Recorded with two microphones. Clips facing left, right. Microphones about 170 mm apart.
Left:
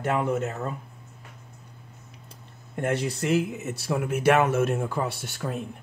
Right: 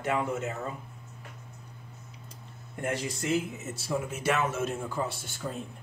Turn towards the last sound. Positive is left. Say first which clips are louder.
# left 5 dB
turn(degrees=70)  # may be behind; listen again after turning